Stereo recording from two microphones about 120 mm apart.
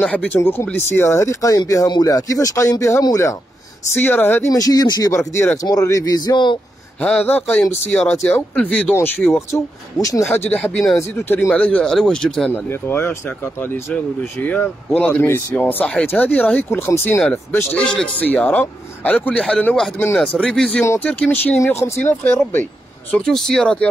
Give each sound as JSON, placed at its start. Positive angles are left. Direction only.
{"t": 0.0, "sound": "a man's voice", "side_deg": 10}
{"t": 3.9, "sound": "a man's voice", "side_deg": 15}
{"t": 4.5, "sound": "speech", "side_deg": 30}
{"t": 7.0, "sound": "a man's voice", "side_deg": 10}
{"t": 9.5, "sound": "speech", "side_deg": 30}
{"t": 10.3, "sound": "a man's voice", "side_deg": 15}
{"t": 12.5, "sound": "a man's voice", "side_deg": 20}
{"t": 17.2, "sound": "a man's voice", "side_deg": 10}
{"t": 21.5, "sound": "speech", "side_deg": 25}
{"t": 23.1, "sound": "speech", "side_deg": 5}